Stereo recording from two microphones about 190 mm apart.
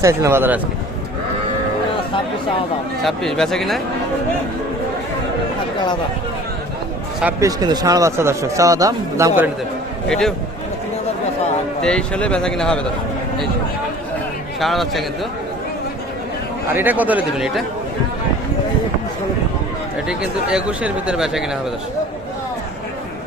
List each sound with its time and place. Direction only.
0.0 s speech: 15° right (ahead or behind)
3.0 s speech: centre (ahead or behind)
7.2 s speech: 10° right (ahead or behind)
10.1 s speech: 5° left (ahead or behind)
11.8 s speech: 5° left (ahead or behind)
14.6 s speech: centre (ahead or behind)
16.7 s speech: 10° right (ahead or behind)
20.1 s speech: 5° right (ahead or behind)